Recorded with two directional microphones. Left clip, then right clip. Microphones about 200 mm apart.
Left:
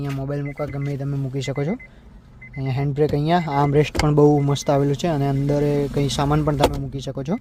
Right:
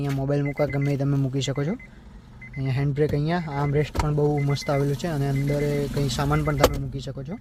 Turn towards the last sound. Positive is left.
turn(degrees=15)  # may be behind; listen again after turning